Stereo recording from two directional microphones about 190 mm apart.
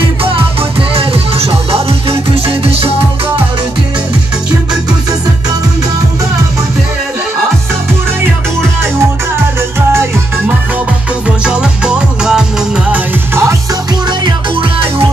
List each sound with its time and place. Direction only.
0.2 s music: 30° right (ahead or behind)
11.2 s music: 5° right (ahead or behind)
14.0 s music: 25° right (ahead or behind)